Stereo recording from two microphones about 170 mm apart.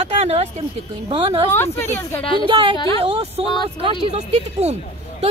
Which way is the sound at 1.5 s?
15° left (ahead or behind).